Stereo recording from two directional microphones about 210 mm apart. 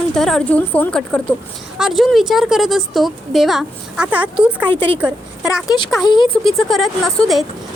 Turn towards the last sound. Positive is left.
turn(degrees=0)  # may be behind; listen again after turning